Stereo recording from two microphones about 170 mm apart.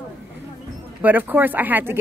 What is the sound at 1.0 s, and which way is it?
Speech, 10° right (ahead or behind).